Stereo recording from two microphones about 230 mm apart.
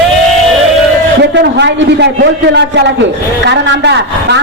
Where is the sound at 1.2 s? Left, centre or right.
Right.